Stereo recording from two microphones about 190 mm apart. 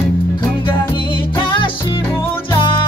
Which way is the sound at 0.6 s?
25° left (ahead or behind).